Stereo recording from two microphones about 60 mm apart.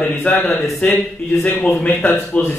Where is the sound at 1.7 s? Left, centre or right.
Left.